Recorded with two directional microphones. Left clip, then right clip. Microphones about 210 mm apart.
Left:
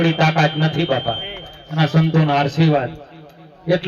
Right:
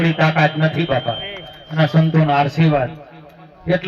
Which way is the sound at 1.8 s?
50° right (ahead or behind).